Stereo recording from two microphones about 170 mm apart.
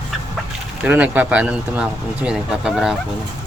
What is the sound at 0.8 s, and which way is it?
Speech, 10° right (ahead or behind).